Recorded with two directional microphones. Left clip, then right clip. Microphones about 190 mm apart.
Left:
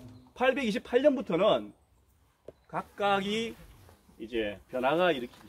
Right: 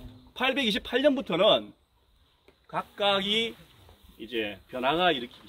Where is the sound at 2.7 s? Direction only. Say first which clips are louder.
Right 2 dB; 25° right (ahead or behind).